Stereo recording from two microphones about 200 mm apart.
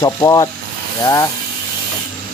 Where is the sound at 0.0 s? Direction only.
20° left (ahead or behind).